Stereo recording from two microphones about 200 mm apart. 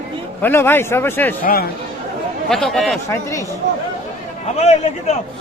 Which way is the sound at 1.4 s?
50° left (ahead or behind).